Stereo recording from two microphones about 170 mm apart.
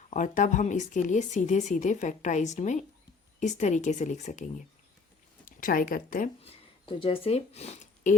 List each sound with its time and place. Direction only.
0.1 s speech: 50° left (ahead or behind)
6.4 s speech: 30° left (ahead or behind)